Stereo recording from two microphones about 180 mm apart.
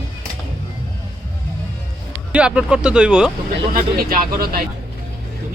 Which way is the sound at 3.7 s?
50° right (ahead or behind).